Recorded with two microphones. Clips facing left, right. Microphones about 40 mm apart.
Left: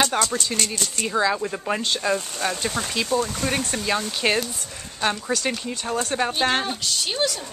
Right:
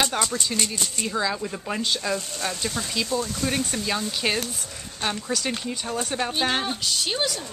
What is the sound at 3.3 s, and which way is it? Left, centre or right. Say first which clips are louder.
Speech: left 1 dB; left.